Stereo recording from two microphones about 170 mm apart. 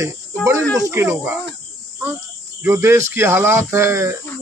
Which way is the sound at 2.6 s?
15° right (ahead or behind).